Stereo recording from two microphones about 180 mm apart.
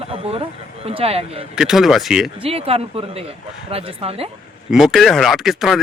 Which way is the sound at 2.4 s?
30° right (ahead or behind).